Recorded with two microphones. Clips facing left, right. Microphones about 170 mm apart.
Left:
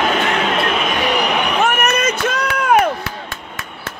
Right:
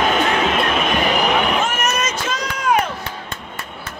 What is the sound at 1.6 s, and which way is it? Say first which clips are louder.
Run: left 4 dB; 60° left (ahead or behind).